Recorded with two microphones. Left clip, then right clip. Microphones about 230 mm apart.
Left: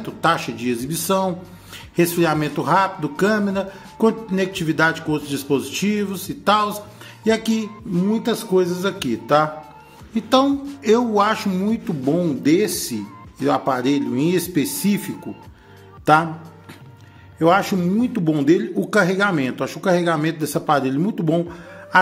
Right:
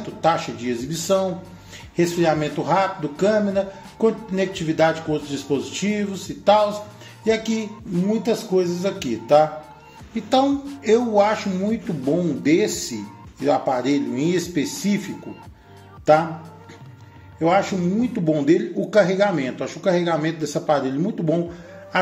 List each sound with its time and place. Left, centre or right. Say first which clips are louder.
0.2 s a man's voice: left 1 dB; left
17.4 s a man's voice: left 2 dB; left